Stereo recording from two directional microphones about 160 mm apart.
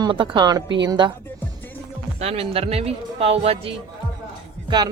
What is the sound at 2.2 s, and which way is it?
Speech, 40° right (ahead or behind).